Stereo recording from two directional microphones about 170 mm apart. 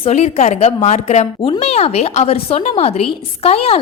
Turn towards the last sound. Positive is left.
turn(degrees=35)  # may be behind; listen again after turning